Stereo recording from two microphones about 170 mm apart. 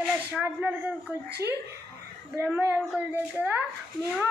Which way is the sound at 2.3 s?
10° right (ahead or behind).